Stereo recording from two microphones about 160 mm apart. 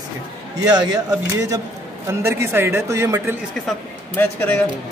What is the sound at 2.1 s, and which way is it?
A man's voice, 15° right (ahead or behind).